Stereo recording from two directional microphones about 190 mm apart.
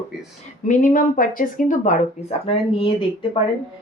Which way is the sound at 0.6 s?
45° left (ahead or behind).